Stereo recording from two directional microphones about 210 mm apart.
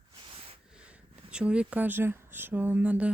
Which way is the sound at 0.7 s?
5° right (ahead or behind).